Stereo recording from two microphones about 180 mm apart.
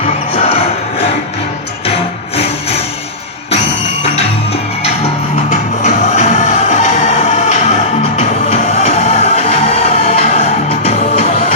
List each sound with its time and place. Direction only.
0.0 s music: 35° left (ahead or behind)
2.3 s music: 35° left (ahead or behind)
4.8 s music: 35° left (ahead or behind)